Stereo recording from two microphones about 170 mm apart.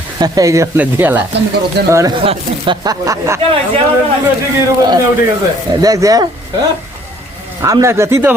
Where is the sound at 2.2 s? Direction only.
30° right (ahead or behind).